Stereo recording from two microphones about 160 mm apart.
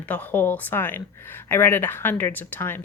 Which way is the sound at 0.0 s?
10° left (ahead or behind).